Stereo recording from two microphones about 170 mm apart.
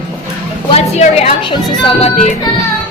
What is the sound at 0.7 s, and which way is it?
Speech, 35° left (ahead or behind).